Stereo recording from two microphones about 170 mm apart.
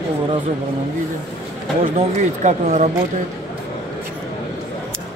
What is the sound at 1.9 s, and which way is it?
Speech, 45° right (ahead or behind).